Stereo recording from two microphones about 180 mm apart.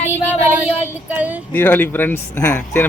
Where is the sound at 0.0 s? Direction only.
15° left (ahead or behind).